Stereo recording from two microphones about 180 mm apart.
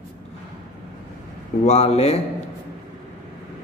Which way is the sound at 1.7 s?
35° left (ahead or behind).